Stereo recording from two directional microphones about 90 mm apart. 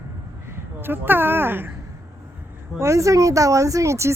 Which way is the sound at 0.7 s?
25° right (ahead or behind).